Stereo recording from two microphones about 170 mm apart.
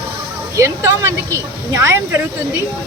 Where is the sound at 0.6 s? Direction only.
15° right (ahead or behind).